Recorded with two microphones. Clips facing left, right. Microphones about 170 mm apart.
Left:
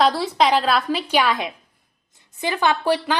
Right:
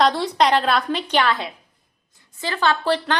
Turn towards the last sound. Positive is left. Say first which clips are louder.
# left 1 dB
turn(degrees=10)  # may be behind; listen again after turning